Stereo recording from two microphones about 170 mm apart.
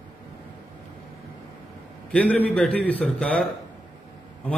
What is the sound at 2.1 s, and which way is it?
A man's voice, 10° left (ahead or behind).